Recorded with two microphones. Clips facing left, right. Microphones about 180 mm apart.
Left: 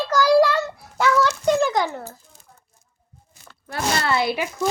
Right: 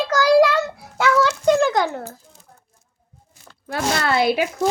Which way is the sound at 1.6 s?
60° right (ahead or behind).